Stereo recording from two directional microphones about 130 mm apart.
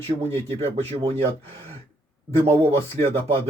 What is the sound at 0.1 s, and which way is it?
Speech, 50° right (ahead or behind).